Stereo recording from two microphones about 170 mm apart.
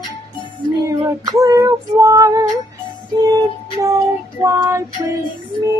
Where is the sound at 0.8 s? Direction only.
20° right (ahead or behind).